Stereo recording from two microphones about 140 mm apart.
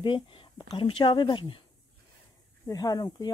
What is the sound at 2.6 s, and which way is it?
Speech, 25° left (ahead or behind).